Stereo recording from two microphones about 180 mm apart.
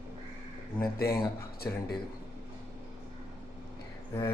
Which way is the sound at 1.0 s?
15° left (ahead or behind).